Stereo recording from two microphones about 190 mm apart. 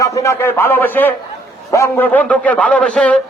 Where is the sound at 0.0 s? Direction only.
15° left (ahead or behind).